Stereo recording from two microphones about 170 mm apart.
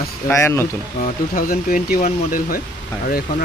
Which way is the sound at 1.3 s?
55° left (ahead or behind).